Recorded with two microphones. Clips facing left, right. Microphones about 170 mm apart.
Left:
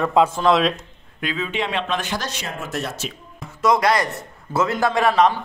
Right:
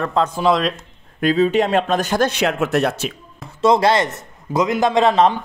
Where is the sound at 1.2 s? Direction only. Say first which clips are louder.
Right 10 dB; 40° right (ahead or behind); by 3.1 s 60° right (ahead or behind).